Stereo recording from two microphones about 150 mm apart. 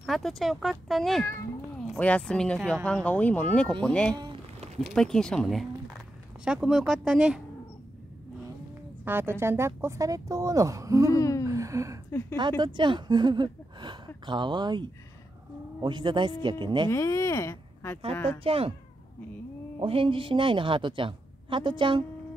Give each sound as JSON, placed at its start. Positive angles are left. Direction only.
{"t": 0.0, "sound": "speech", "side_deg": 0}
{"t": 9.0, "sound": "speech", "side_deg": -15}
{"t": 11.1, "sound": "a sound", "side_deg": 20}
{"t": 11.4, "sound": "a sound", "side_deg": -20}
{"t": 12.1, "sound": "speech", "side_deg": 20}
{"t": 12.4, "sound": "a woman's voice", "side_deg": -30}
{"t": 16.9, "sound": "speech", "side_deg": 20}
{"t": 18.4, "sound": "a woman's voice", "side_deg": -40}
{"t": 19.8, "sound": "a woman's voice", "side_deg": -35}